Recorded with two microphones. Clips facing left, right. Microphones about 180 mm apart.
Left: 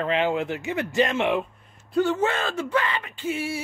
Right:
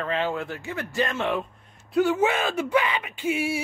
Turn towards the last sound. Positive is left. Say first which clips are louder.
# right 2 dB
turn(degrees=-15)  # may be behind; listen again after turning